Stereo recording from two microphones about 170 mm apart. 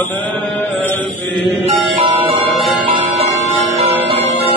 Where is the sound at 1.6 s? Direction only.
35° right (ahead or behind).